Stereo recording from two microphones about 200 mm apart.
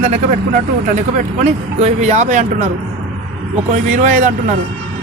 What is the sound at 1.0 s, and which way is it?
Speech, 35° right (ahead or behind).